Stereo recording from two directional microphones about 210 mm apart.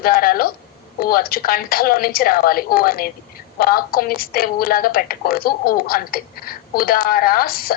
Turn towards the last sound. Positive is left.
turn(degrees=45)  # may be behind; listen again after turning